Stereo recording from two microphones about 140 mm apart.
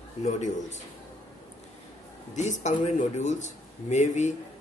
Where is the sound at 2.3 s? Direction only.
55° left (ahead or behind).